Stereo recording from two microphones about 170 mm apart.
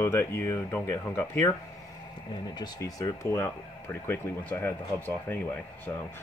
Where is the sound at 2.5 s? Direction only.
25° left (ahead or behind).